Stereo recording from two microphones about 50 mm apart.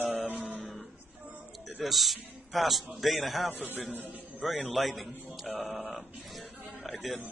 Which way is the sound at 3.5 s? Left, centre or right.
Right.